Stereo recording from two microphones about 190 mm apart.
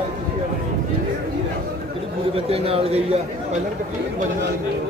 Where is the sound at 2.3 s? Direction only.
30° right (ahead or behind).